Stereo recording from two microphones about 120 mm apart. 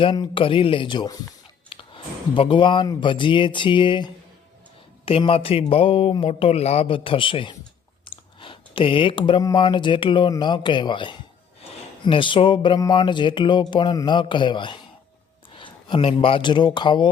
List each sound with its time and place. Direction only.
0.0 s speech: 45° left (ahead or behind)
1.7 s a sound: 45° left (ahead or behind)
2.8 s speech: 35° left (ahead or behind)
8.0 s clicking: 45° left (ahead or behind)
9.4 s speech: 35° left (ahead or behind)